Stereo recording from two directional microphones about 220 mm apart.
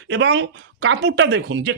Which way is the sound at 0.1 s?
55° right (ahead or behind).